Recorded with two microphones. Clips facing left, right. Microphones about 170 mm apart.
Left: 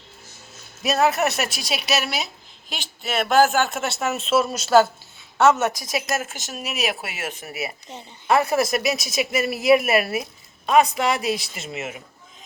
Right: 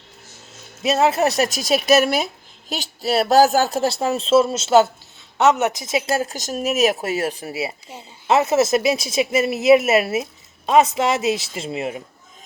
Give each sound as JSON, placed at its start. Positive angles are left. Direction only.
{"t": 0.8, "sound": "a woman's voice", "side_deg": -25}